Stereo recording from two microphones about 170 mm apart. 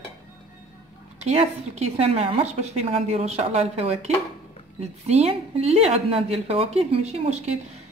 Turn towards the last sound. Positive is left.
turn(degrees=-40)  # may be behind; listen again after turning